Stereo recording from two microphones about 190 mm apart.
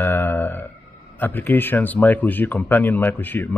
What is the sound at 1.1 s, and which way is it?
Speech, 10° left (ahead or behind).